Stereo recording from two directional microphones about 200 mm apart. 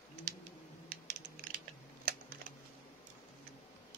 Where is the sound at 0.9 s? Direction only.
45° right (ahead or behind).